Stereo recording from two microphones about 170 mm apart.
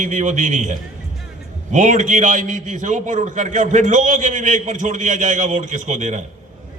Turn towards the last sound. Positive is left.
turn(degrees=-45)  # may be behind; listen again after turning